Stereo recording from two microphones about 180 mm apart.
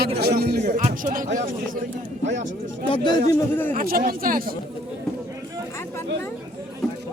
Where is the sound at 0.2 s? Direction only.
60° right (ahead or behind).